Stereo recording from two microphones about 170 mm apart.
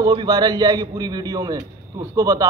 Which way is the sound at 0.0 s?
25° right (ahead or behind).